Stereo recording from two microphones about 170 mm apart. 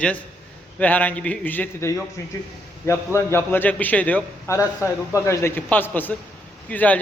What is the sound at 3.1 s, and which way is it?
A man's voice, 15° left (ahead or behind).